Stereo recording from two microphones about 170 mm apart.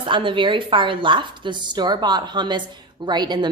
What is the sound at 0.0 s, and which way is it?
A woman's voice, 30° right (ahead or behind).